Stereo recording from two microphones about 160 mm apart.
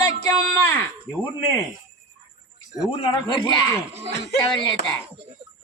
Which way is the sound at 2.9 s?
30° left (ahead or behind).